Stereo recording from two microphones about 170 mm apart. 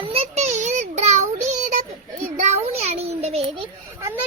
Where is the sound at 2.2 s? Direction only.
45° right (ahead or behind).